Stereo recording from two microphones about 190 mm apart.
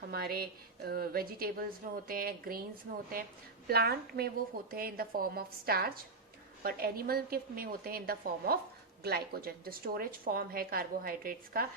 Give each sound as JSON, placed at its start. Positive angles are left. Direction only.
{"t": 0.1, "sound": "a woman's voice", "side_deg": -55}